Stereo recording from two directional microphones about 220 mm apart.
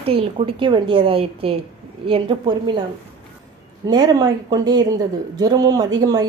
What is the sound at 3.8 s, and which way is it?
A woman's voice, 20° right (ahead or behind).